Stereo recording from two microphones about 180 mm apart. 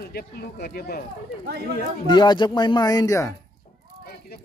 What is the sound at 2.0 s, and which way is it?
Speech, 25° left (ahead or behind).